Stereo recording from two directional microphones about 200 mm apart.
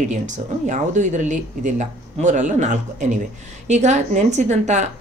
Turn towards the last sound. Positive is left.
turn(degrees=-35)  # may be behind; listen again after turning